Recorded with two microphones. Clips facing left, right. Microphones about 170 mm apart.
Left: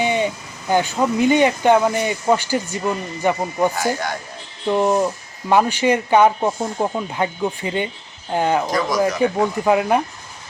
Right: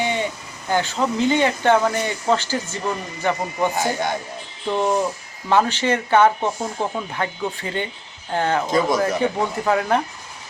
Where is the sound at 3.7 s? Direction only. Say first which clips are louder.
Even; 20° right (ahead or behind).